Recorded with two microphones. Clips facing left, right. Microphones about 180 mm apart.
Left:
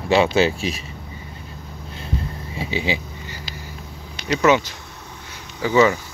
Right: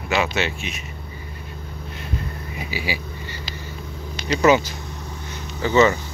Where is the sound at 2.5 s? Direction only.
25° left (ahead or behind).